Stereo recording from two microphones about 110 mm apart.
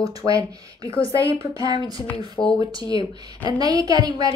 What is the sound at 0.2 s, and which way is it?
Speech, 30° right (ahead or behind).